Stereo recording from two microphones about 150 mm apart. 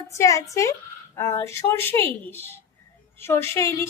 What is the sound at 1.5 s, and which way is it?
Female singing, 15° left (ahead or behind).